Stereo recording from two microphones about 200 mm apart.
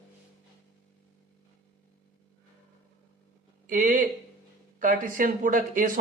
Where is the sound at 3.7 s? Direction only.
40° right (ahead or behind).